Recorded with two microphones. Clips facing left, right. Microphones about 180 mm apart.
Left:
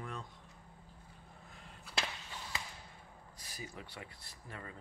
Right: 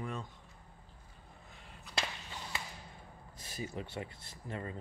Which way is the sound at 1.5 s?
Centre (ahead or behind).